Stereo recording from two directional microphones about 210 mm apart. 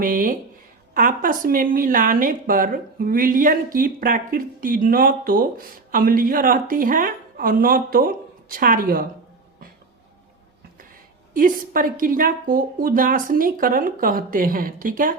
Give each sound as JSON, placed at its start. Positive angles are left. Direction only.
{"t": 0.0, "sound": "a woman's voice", "side_deg": -40}
{"t": 11.3, "sound": "a woman's voice", "side_deg": -40}